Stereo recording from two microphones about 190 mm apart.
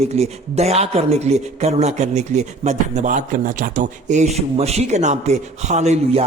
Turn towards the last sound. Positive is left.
turn(degrees=-35)  # may be behind; listen again after turning